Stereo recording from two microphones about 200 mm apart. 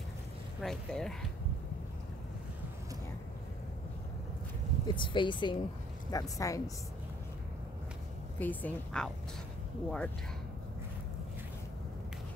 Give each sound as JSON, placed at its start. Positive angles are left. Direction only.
{"t": 0.6, "sound": "speech", "side_deg": 0}
{"t": 4.8, "sound": "speech", "side_deg": 25}
{"t": 8.4, "sound": "speech", "side_deg": 10}